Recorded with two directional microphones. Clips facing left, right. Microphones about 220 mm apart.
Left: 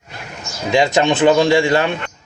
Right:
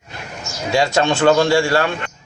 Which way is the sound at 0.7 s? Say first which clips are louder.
Left 2 dB; 20° left (ahead or behind).